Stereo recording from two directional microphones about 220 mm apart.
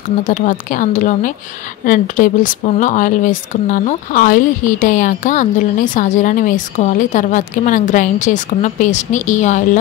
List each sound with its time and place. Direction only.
0.2 s speech: 35° left (ahead or behind)